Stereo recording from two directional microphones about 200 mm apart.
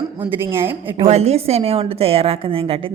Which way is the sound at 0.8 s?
25° right (ahead or behind).